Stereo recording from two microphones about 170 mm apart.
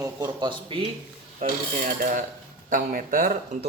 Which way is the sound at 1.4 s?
50° right (ahead or behind).